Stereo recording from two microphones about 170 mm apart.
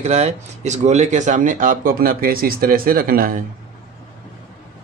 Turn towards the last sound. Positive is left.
turn(degrees=-55)  # may be behind; listen again after turning